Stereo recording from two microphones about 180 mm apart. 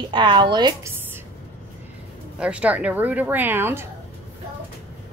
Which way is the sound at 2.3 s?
5° right (ahead or behind).